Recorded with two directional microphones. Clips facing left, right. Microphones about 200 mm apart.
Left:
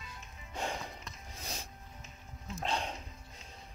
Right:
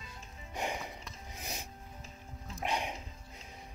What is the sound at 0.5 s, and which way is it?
Music, 15° right (ahead or behind).